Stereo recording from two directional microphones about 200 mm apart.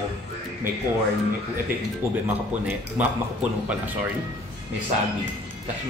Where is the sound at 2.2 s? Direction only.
5° right (ahead or behind).